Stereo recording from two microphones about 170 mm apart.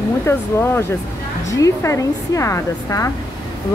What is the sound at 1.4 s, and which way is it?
Speech, 20° left (ahead or behind).